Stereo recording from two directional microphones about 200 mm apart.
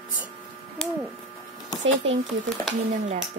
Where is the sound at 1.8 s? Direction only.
65° right (ahead or behind).